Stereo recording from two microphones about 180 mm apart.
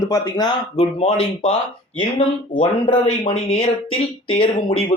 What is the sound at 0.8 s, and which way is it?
Speech, 35° left (ahead or behind).